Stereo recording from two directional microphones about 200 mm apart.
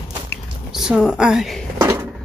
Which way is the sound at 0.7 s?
Centre (ahead or behind).